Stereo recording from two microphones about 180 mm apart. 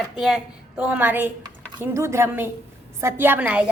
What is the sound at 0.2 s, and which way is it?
A woman's voice, centre (ahead or behind).